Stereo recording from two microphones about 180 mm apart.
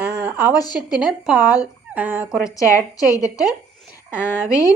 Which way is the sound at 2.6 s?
15° left (ahead or behind).